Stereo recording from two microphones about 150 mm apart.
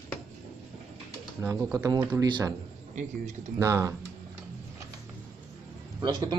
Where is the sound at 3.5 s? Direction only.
20° right (ahead or behind).